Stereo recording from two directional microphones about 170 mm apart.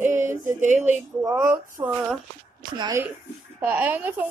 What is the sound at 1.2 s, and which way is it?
Speech, 20° right (ahead or behind).